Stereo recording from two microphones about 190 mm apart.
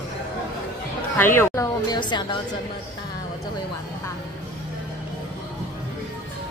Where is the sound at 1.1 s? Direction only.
10° left (ahead or behind).